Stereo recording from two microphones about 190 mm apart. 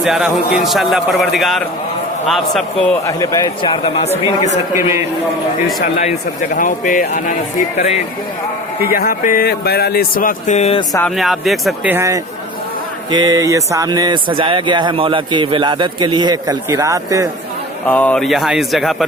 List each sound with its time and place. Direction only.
0.0 s speech: centre (ahead or behind)
3.1 s speech: 20° left (ahead or behind)
4.7 s a man's voice: 15° right (ahead or behind)
5.8 s speech: 40° left (ahead or behind)
8.8 s speech: 50° left (ahead or behind); by 10.8 s 35° left (ahead or behind)
11.1 s speech: centre (ahead or behind); by 17.2 s 15° right (ahead or behind)
17.8 s speech: 5° left (ahead or behind)